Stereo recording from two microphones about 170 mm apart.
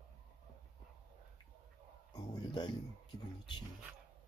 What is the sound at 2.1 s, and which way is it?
Speech, 25° left (ahead or behind).